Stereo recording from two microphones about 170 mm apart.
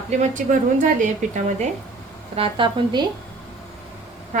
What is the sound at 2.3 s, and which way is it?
Speech, 30° right (ahead or behind).